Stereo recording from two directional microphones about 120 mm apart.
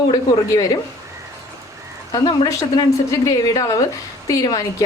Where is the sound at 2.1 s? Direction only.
30° left (ahead or behind).